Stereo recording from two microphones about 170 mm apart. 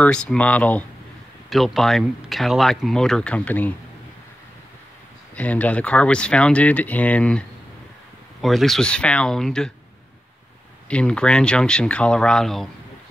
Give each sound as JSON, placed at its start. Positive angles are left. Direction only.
{"t": 0.0, "sound": "speech", "side_deg": 5}
{"t": 5.3, "sound": "speech", "side_deg": 10}
{"t": 10.9, "sound": "speech", "side_deg": 5}